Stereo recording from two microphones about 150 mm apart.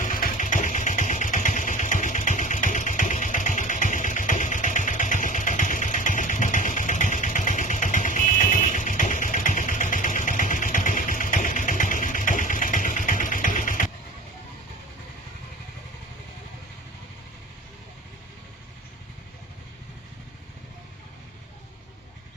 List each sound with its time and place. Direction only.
0.0 s vehicle: 65° left (ahead or behind)